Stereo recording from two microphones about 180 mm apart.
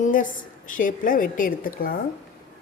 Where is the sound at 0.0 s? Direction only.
45° left (ahead or behind).